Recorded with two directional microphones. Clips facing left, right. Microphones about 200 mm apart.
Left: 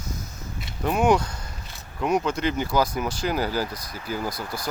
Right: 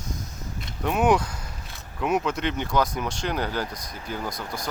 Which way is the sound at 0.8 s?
Centre (ahead or behind).